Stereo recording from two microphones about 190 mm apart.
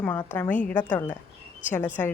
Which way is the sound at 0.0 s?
10° left (ahead or behind).